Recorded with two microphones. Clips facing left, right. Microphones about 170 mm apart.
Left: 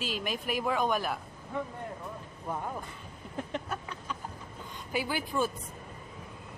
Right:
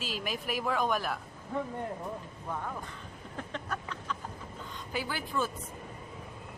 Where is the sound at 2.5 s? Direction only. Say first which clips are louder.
Left 2 dB; 20° left (ahead or behind).